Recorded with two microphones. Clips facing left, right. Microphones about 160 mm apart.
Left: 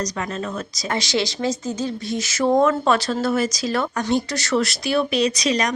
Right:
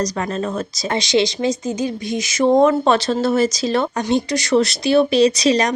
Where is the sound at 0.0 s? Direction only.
35° right (ahead or behind).